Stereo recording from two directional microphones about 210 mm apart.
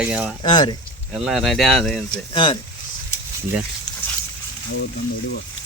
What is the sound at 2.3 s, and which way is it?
Speech, 25° left (ahead or behind).